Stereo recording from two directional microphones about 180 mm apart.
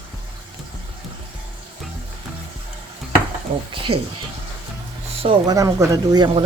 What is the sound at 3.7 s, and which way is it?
Speech, 30° right (ahead or behind).